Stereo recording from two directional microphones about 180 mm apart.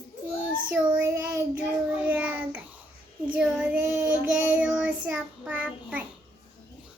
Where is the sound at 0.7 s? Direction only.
5° right (ahead or behind).